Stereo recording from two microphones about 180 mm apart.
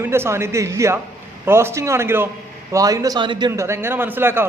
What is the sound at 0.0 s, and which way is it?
A man's voice, 15° right (ahead or behind).